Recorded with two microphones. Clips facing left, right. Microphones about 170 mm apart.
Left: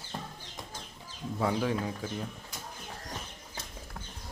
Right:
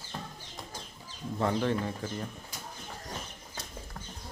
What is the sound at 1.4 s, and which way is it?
Speech, 5° left (ahead or behind).